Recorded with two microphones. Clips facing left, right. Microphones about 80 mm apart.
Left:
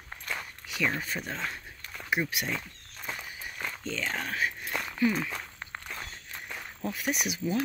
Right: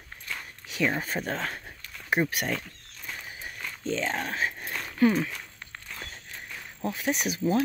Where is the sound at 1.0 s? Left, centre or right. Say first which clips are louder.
Right 4 dB; right.